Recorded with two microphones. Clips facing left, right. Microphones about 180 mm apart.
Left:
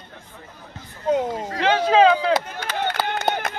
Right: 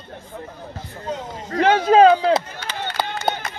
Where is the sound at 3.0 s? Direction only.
55° left (ahead or behind).